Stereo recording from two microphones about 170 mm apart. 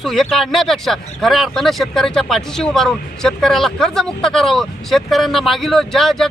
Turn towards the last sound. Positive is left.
turn(degrees=0)  # may be behind; listen again after turning